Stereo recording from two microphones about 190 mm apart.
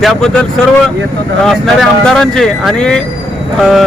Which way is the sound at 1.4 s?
Centre (ahead or behind).